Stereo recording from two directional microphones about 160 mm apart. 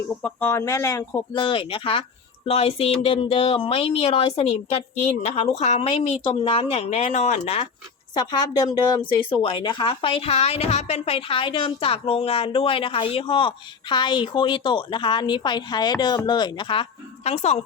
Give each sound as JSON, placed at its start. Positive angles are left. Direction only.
{"t": 0.2, "sound": "a woman's voice", "side_deg": 10}
{"t": 1.4, "sound": "speech", "side_deg": 30}
{"t": 8.1, "sound": "a woman's voice", "side_deg": 25}
{"t": 17.2, "sound": "speech", "side_deg": 45}